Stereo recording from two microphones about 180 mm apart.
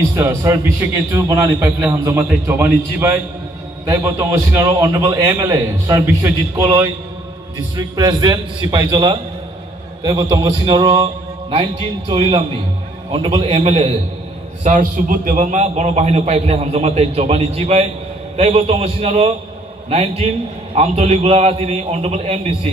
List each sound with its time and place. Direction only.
0.1 s a man's voice: 15° right (ahead or behind)
10.3 s a man's voice: 25° right (ahead or behind)
14.6 s a man's voice: 45° right (ahead or behind)